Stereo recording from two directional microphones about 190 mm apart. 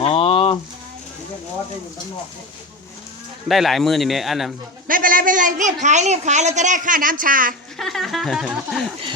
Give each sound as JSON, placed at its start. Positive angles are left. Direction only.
{"t": 0.0, "sound": "a sound", "side_deg": 30}
{"t": 3.5, "sound": "speech", "side_deg": 0}
{"t": 4.9, "sound": "a woman's voice", "side_deg": -45}
{"t": 7.8, "sound": "speech", "side_deg": 0}